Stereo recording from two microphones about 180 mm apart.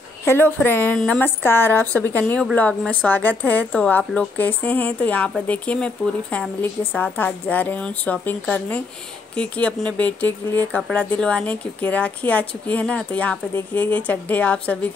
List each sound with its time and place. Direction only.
0.2 s a woman's voice: 15° left (ahead or behind)